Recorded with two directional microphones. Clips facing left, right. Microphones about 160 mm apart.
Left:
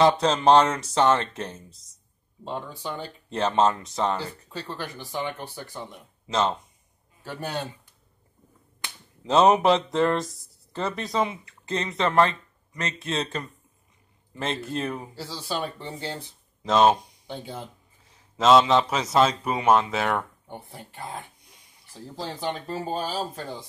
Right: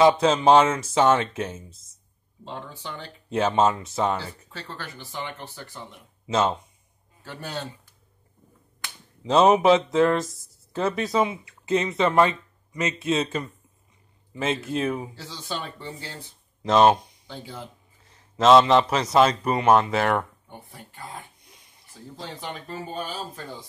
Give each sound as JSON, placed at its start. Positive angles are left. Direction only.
{"t": 0.0, "sound": "speech", "side_deg": -5}
{"t": 2.4, "sound": "speech", "side_deg": 10}
{"t": 3.3, "sound": "speech", "side_deg": -5}
{"t": 4.5, "sound": "speech", "side_deg": 15}
{"t": 6.2, "sound": "speech", "side_deg": -5}
{"t": 7.2, "sound": "speech", "side_deg": 15}
{"t": 9.2, "sound": "speech", "side_deg": 0}
{"t": 15.8, "sound": "speech", "side_deg": 25}
{"t": 16.6, "sound": "speech", "side_deg": 0}
{"t": 18.3, "sound": "speech", "side_deg": 0}
{"t": 20.4, "sound": "speech", "side_deg": 25}